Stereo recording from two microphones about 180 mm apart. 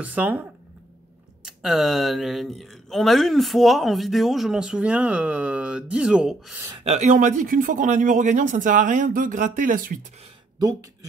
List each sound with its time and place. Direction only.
0.0 s speech: 10° right (ahead or behind)
6.8 s speech: 35° right (ahead or behind)